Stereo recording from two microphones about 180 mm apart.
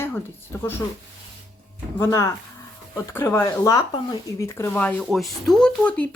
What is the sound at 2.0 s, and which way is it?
Speech, 15° left (ahead or behind).